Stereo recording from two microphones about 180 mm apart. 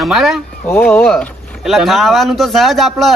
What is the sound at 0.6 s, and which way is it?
Speech, 10° left (ahead or behind).